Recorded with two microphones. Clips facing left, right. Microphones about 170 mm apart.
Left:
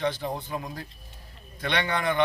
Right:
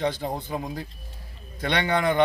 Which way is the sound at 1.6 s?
35° right (ahead or behind).